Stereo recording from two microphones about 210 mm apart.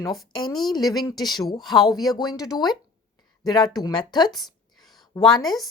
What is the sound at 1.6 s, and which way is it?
Speech, centre (ahead or behind).